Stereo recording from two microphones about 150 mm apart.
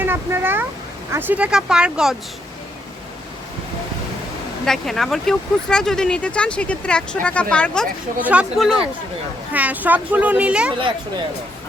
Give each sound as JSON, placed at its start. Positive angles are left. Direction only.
{"t": 0.0, "sound": "a sound", "side_deg": -15}
{"t": 1.1, "sound": "speech", "side_deg": -10}
{"t": 4.6, "sound": "speech", "side_deg": 5}
{"t": 8.2, "sound": "a woman's voice", "side_deg": -10}
{"t": 10.8, "sound": "speech", "side_deg": -35}